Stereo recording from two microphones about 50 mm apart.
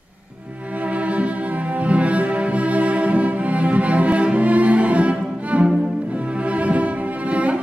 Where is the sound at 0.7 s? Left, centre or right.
Right.